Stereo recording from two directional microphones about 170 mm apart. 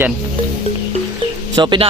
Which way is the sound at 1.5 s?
25° right (ahead or behind).